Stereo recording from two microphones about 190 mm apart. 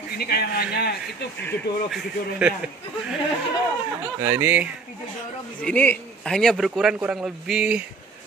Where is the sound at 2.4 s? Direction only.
5° right (ahead or behind).